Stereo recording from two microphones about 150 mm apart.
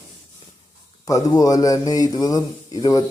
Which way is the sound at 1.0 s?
25° left (ahead or behind).